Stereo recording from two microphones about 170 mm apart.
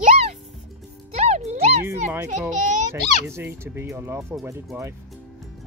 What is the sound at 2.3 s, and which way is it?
Speech, 45° right (ahead or behind).